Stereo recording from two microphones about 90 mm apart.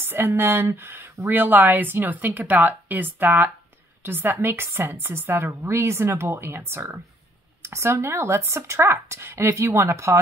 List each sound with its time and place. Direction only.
0.0 s a woman's voice: 25° right (ahead or behind)